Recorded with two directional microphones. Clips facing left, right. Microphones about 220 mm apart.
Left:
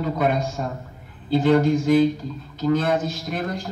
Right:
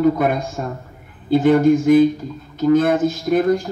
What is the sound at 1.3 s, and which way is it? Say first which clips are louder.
A man's voice: right 5 dB; 50° right (ahead or behind).